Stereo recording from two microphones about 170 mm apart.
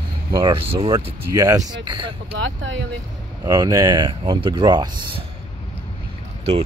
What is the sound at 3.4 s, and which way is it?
Speech, 20° right (ahead or behind).